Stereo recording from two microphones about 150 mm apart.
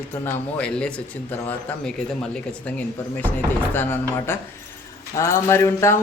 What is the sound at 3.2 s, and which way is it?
Speech, 15° left (ahead or behind).